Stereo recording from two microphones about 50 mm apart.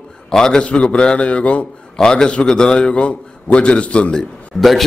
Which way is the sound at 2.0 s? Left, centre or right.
Centre.